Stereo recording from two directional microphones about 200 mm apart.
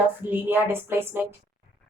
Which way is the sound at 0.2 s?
10° right (ahead or behind).